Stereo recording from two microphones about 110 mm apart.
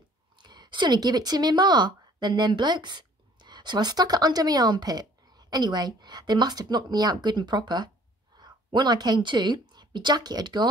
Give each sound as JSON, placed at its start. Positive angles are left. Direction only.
{"t": 0.4, "sound": "a woman's voice", "side_deg": -40}